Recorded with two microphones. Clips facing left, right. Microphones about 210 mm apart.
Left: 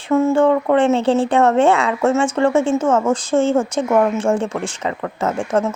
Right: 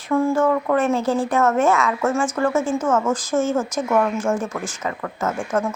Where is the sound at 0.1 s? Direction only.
25° left (ahead or behind).